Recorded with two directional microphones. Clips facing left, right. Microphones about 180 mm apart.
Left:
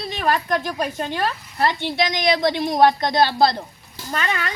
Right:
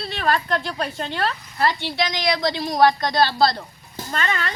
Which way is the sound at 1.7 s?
50° left (ahead or behind).